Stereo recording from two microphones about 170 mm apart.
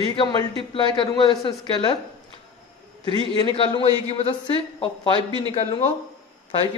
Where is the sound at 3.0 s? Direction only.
30° right (ahead or behind).